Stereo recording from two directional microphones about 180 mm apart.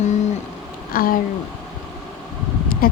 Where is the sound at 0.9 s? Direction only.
50° left (ahead or behind).